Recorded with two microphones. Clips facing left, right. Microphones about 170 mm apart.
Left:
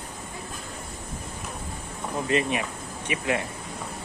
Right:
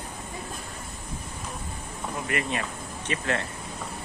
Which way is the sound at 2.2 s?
20° left (ahead or behind).